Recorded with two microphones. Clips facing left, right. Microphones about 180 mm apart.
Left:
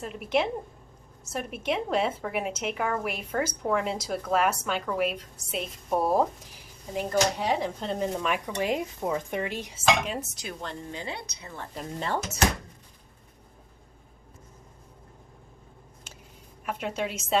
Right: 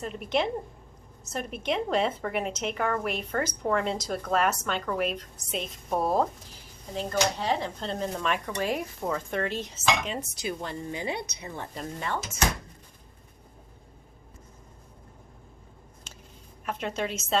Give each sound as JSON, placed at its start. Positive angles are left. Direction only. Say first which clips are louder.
{"t": 0.0, "sound": "a woman's voice", "louder": "left 1 dB", "side_deg": 5}
{"t": 11.9, "sound": "speech", "louder": "left 4 dB", "side_deg": 35}
{"t": 16.6, "sound": "a woman's voice", "louder": "even", "side_deg": 10}